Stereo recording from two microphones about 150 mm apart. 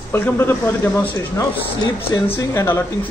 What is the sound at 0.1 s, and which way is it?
Speech, 15° left (ahead or behind).